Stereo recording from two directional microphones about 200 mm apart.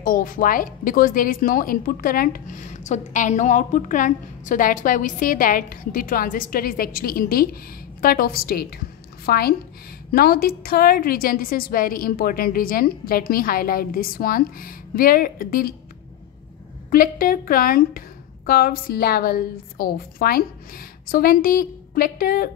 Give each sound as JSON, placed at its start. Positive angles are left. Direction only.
{"t": 0.0, "sound": "a woman's voice", "side_deg": 45}
{"t": 16.9, "sound": "a woman's voice", "side_deg": 45}